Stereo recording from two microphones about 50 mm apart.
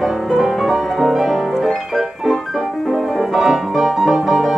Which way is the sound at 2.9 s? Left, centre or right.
Centre.